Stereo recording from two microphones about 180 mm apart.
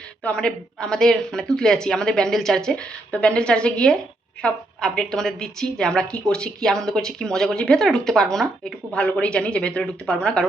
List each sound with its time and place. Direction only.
0.3 s a woman's voice: 5° left (ahead or behind)